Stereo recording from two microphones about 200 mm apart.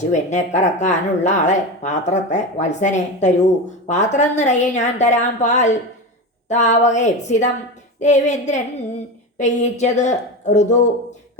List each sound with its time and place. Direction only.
0.1 s speech: 35° left (ahead or behind)